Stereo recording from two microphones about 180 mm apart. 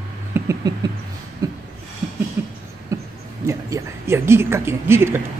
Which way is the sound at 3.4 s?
15° right (ahead or behind).